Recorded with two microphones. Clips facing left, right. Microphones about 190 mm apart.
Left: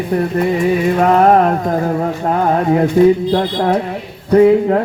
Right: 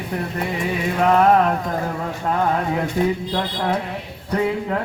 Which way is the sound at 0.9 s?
45° left (ahead or behind).